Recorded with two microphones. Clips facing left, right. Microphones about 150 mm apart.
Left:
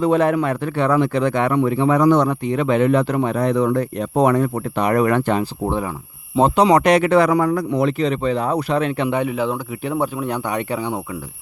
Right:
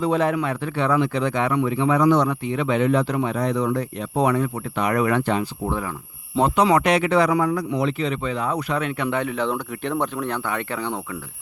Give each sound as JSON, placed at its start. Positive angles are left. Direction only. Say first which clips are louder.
{"t": 0.0, "sound": "speech", "louder": "left 4 dB", "side_deg": 55}
{"t": 5.4, "sound": "speech", "louder": "left 4 dB", "side_deg": 25}
{"t": 6.7, "sound": "speech", "louder": "left 4 dB", "side_deg": 45}
{"t": 9.0, "sound": "speech", "louder": "left 3 dB", "side_deg": 15}